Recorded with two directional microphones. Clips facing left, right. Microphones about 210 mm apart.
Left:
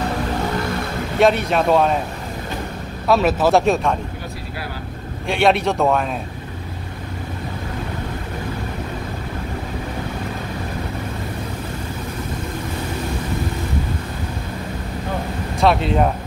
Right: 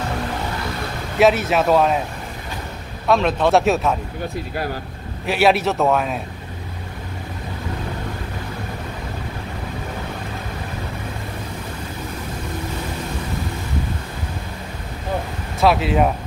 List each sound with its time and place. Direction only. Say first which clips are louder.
1.2 s a man's voice: even; 5° right (ahead or behind)
3.1 s a man's voice: left 1 dB; 5° left (ahead or behind)
5.2 s a man's voice: even; 5° right (ahead or behind)
15.6 s a man's voice: even; 5° right (ahead or behind)